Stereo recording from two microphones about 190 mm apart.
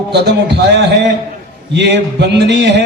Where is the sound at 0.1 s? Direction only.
60° right (ahead or behind).